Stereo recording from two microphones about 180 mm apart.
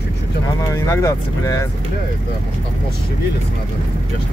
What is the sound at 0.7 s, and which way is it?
Speech, 15° left (ahead or behind).